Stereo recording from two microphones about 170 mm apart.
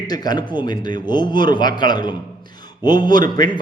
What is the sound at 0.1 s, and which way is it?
A man's voice, 25° left (ahead or behind).